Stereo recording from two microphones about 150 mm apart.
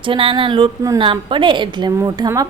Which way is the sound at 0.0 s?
35° right (ahead or behind).